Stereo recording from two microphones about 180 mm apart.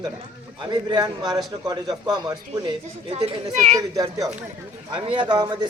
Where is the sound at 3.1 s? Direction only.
35° right (ahead or behind).